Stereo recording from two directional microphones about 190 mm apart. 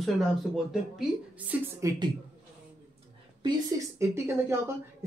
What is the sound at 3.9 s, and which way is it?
Speech, 15° right (ahead or behind).